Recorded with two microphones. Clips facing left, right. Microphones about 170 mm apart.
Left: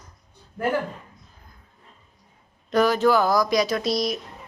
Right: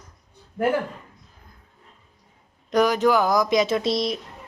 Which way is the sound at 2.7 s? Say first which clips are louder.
Even; 15° right (ahead or behind).